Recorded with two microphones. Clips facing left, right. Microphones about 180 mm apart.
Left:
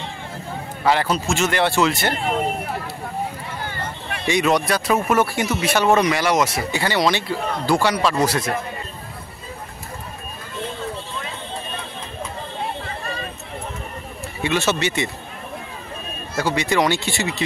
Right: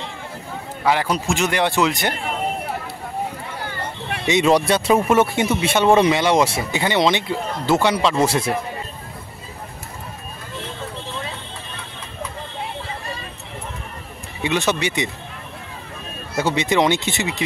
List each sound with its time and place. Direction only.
0.8 s speech: 10° right (ahead or behind)
4.3 s speech: 25° right (ahead or behind)
14.4 s speech: 15° right (ahead or behind)
16.3 s speech: 20° right (ahead or behind)